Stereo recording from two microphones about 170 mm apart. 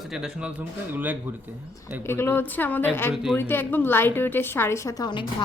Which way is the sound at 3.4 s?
10° left (ahead or behind).